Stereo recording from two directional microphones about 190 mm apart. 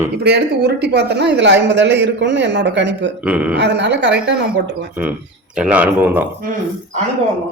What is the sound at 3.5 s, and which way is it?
Speech, 65° right (ahead or behind).